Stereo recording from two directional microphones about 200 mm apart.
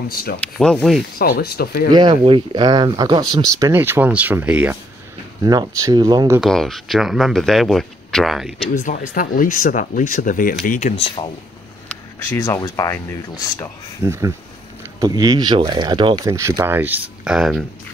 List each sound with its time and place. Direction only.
0.1 s speech: 45° left (ahead or behind)
0.4 s speech: 5° left (ahead or behind)
1.1 s speech: 50° left (ahead or behind)
1.9 s speech: 20° right (ahead or behind)
5.4 s speech: 20° right (ahead or behind)
6.4 s speech: centre (ahead or behind)
8.7 s speech: 40° left (ahead or behind)
11.1 s speech: 25° left (ahead or behind)
11.9 s speech: 15° left (ahead or behind)
14.0 s speech: 15° right (ahead or behind)